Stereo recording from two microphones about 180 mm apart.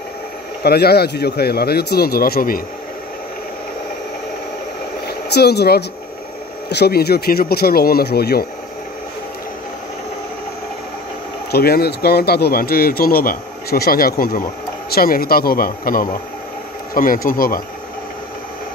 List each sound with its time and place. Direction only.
0.6 s speech: 60° left (ahead or behind)
5.0 s speech: 65° left (ahead or behind)
11.5 s speech: 60° left (ahead or behind)